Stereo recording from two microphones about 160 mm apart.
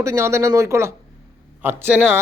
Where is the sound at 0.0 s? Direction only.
20° right (ahead or behind).